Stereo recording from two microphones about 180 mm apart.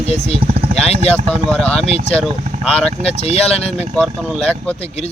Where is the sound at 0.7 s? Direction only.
35° left (ahead or behind).